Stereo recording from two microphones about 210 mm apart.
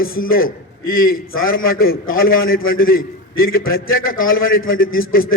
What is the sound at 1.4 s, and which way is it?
A man's voice, 45° left (ahead or behind).